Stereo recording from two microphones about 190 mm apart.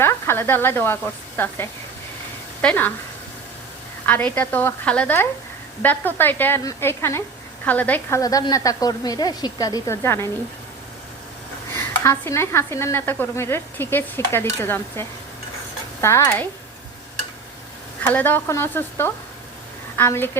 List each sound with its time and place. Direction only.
0.0 s speech: 10° left (ahead or behind)
4.0 s speech: 10° left (ahead or behind)
12.0 s speech: 15° left (ahead or behind)
18.1 s speech: 10° left (ahead or behind)